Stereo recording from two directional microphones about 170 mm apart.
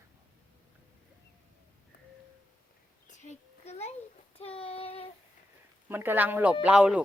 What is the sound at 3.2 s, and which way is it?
Speech, 40° left (ahead or behind).